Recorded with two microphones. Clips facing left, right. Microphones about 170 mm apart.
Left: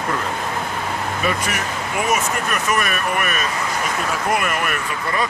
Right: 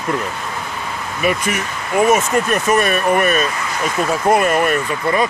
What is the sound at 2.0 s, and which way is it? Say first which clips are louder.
Speech: right 8 dB; 30° right (ahead or behind).